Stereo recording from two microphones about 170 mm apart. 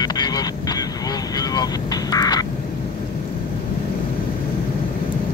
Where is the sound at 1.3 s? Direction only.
20° left (ahead or behind).